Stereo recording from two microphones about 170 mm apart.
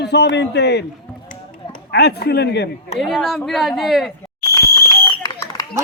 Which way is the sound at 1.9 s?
75° left (ahead or behind).